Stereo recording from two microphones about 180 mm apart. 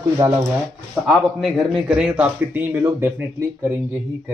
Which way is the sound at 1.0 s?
5° right (ahead or behind).